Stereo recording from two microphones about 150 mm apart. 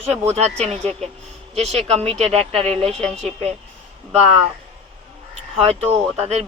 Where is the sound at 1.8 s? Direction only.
45° right (ahead or behind).